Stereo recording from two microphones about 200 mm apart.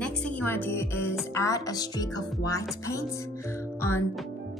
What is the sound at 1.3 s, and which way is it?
Speech, 15° left (ahead or behind).